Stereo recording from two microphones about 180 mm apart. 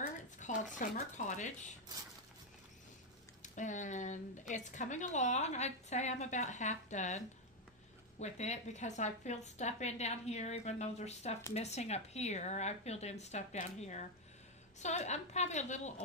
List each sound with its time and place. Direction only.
0.4 s speech: 45° left (ahead or behind)
3.4 s a woman's voice: 45° left (ahead or behind)